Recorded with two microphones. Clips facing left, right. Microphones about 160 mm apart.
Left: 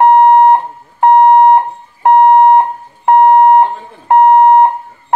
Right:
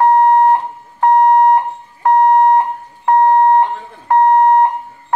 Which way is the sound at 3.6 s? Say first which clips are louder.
Left 4 dB; 20° left (ahead or behind).